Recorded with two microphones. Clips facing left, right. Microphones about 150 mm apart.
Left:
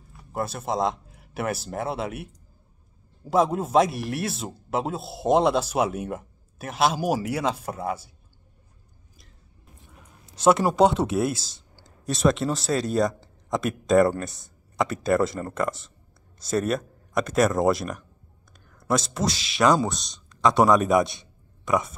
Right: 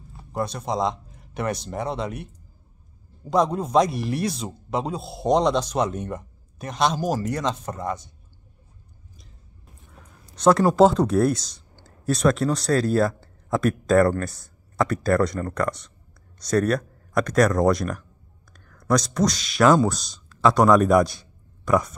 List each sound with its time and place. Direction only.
0.3 s speech: 5° left (ahead or behind)
10.7 s speech: centre (ahead or behind)
15.3 s speech: 25° left (ahead or behind)
16.3 s speech: centre (ahead or behind)
19.1 s speech: 5° left (ahead or behind)
21.1 s a sound: centre (ahead or behind)